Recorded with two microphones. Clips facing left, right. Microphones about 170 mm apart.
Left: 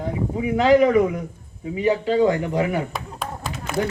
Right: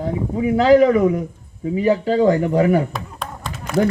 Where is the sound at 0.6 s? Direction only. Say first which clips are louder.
Right 3 dB; 35° right (ahead or behind).